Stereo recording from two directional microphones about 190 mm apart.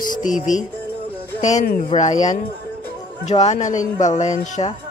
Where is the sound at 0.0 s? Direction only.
45° left (ahead or behind).